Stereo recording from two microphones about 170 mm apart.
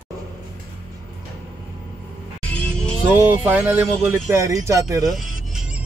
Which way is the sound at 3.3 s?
10° right (ahead or behind).